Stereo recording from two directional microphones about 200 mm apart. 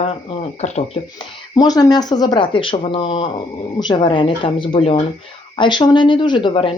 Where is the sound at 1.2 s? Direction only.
20° left (ahead or behind).